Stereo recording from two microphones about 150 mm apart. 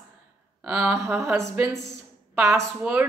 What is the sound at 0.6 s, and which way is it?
A woman's voice, 10° right (ahead or behind).